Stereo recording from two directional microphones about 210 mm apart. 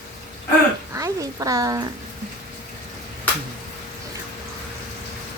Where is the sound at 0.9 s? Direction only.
15° right (ahead or behind).